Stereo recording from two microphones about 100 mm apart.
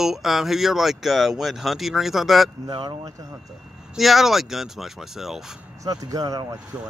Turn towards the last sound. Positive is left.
turn(degrees=-40)  # may be behind; listen again after turning